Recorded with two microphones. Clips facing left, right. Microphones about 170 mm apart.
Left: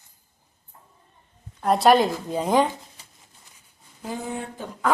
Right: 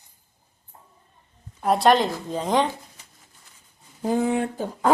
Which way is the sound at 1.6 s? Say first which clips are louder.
Left 1 dB; centre (ahead or behind).